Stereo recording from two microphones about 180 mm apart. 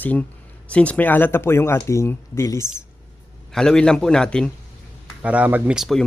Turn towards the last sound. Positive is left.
turn(degrees=0)  # may be behind; listen again after turning